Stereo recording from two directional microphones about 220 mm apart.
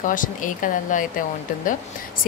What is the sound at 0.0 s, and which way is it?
Speech, 35° left (ahead or behind).